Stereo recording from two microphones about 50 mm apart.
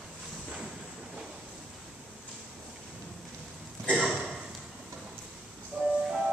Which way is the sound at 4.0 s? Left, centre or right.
Centre.